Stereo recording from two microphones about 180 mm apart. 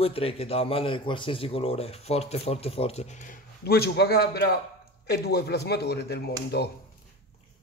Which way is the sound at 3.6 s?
60° left (ahead or behind).